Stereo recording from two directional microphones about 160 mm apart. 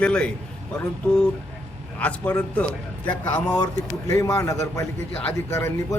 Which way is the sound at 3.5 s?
20° left (ahead or behind).